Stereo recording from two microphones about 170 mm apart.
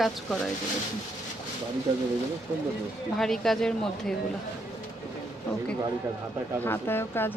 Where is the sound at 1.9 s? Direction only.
30° right (ahead or behind).